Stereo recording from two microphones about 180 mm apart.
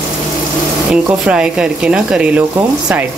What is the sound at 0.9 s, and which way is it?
Speech, 5° right (ahead or behind).